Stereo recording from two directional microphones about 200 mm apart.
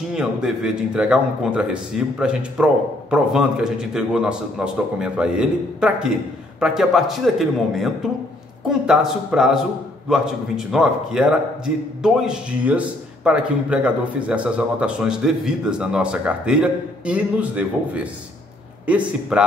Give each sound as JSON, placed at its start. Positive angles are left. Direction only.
{"t": 0.1, "sound": "a man's voice", "side_deg": -5}